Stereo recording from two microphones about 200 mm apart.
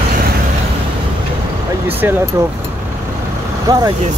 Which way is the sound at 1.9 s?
10° right (ahead or behind).